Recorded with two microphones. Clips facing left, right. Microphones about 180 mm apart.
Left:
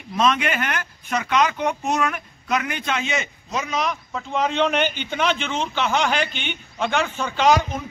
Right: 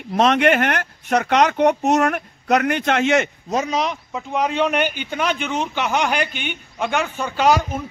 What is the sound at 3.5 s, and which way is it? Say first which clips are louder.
Speech: right 3 dB; 35° right (ahead or behind).